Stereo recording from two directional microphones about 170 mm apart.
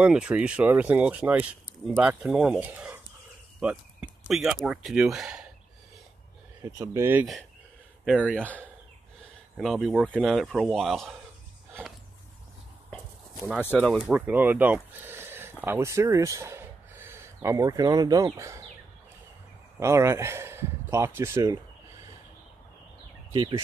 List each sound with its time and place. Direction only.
0.0 s speech: 5° right (ahead or behind)
6.6 s speech: 20° right (ahead or behind); by 8.4 s 5° right (ahead or behind)
9.6 s speech: centre (ahead or behind)
13.7 s speech: 5° left (ahead or behind)
14.1 s speech: 10° right (ahead or behind)
19.8 s speech: 15° right (ahead or behind)
23.3 s speech: 30° right (ahead or behind)